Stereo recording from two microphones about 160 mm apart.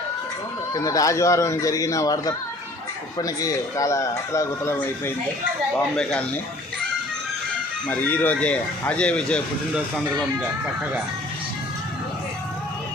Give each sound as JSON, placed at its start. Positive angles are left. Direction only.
{"t": 0.7, "sound": "speech", "side_deg": 20}
{"t": 7.9, "sound": "speech", "side_deg": 10}